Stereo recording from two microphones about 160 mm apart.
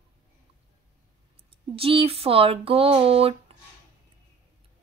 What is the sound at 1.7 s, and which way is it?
Speech, 35° right (ahead or behind).